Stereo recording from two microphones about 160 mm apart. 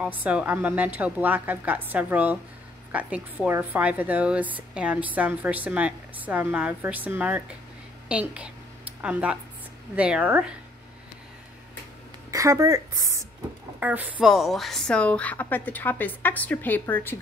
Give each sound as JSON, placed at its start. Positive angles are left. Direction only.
{"t": 0.0, "sound": "a woman's voice", "side_deg": -10}
{"t": 12.3, "sound": "a woman's voice", "side_deg": -20}
{"t": 13.7, "sound": "a woman's voice", "side_deg": -10}